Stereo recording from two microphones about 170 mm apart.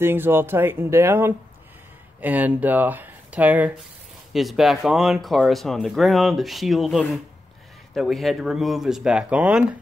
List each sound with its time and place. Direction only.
0.0 s speech: 15° right (ahead or behind)